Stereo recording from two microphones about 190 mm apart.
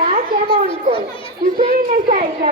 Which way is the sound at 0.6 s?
25° left (ahead or behind).